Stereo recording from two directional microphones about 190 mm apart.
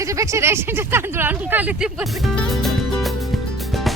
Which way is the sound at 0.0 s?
15° right (ahead or behind).